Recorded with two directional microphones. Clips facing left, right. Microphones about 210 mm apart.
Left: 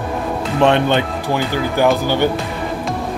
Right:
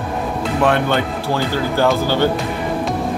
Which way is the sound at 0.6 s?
20° left (ahead or behind).